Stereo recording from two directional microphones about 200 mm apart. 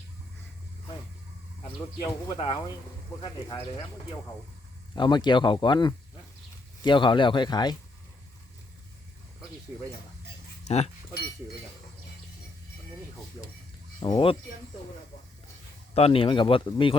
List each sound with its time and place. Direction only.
2.0 s speech: 15° left (ahead or behind)
4.9 s speech: 20° left (ahead or behind)
10.7 s speech: 30° left (ahead or behind)
14.0 s speech: 25° left (ahead or behind)
16.0 s speech: 30° left (ahead or behind)